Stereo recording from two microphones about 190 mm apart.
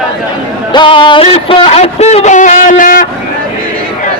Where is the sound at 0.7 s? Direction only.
25° left (ahead or behind); by 3.1 s 45° left (ahead or behind).